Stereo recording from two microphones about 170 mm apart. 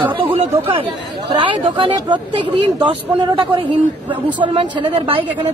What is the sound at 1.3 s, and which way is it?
Speech, 30° right (ahead or behind).